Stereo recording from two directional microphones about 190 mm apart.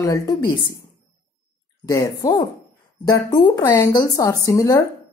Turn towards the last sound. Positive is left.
turn(degrees=15)  # may be behind; listen again after turning